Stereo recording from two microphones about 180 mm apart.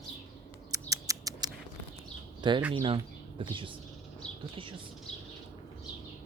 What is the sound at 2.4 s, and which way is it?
A man's voice, 25° right (ahead or behind).